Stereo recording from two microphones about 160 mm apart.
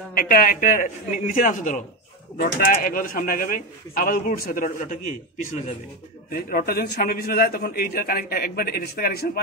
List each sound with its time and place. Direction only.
0.1 s speech: 65° left (ahead or behind)
6.3 s a man's voice: 70° left (ahead or behind)